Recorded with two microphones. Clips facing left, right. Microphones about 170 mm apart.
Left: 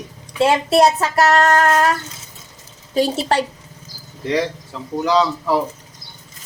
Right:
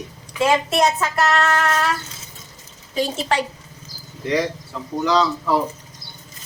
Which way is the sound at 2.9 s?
35° left (ahead or behind).